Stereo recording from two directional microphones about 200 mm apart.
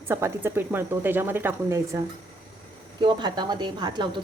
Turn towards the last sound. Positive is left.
turn(degrees=-20)  # may be behind; listen again after turning